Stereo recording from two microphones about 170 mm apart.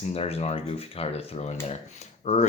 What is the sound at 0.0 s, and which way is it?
Speech, 35° left (ahead or behind).